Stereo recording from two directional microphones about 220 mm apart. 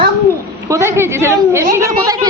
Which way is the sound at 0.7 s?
10° right (ahead or behind).